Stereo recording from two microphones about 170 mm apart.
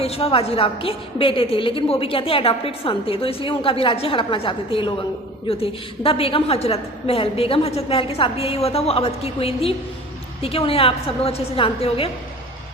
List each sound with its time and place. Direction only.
0.0 s a woman's voice: 35° left (ahead or behind)